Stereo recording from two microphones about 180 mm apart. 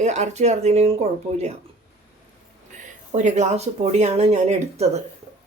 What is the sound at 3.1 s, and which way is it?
Speech, 40° right (ahead or behind).